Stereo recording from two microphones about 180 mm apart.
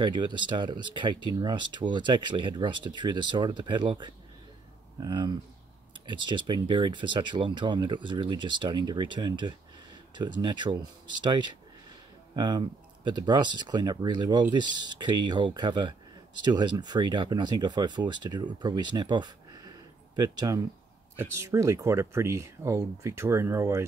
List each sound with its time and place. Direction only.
0.0 s speech: 25° right (ahead or behind)